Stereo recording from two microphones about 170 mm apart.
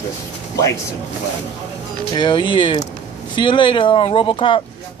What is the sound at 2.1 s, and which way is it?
Speech, 30° left (ahead or behind).